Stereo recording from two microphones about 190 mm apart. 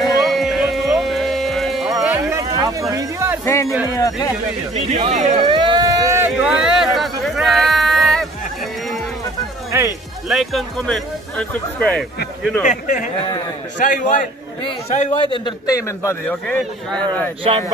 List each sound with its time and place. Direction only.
0.2 s music: centre (ahead or behind)
2.6 s speech: 15° right (ahead or behind)
3.4 s a man's voice: 15° left (ahead or behind)
4.7 s speech: 35° right (ahead or behind)
5.4 s a sound: 25° right (ahead or behind); by 8.3 s centre (ahead or behind)
9.7 s speech: 15° right (ahead or behind)
10.2 s speech: centre (ahead or behind)
12.6 s a man's voice: 40° left (ahead or behind)
14.6 s a man's voice: 30° left (ahead or behind)
16.4 s speech: 5° left (ahead or behind)